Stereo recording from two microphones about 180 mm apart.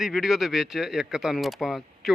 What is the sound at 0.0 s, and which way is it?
Speech, centre (ahead or behind).